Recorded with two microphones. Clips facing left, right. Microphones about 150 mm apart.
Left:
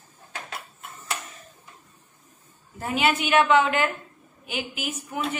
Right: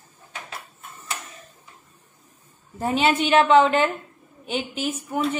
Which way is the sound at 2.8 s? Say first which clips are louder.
Right 3 dB; 25° right (ahead or behind).